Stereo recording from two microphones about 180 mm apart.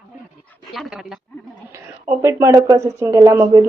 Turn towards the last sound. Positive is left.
turn(degrees=-15)  # may be behind; listen again after turning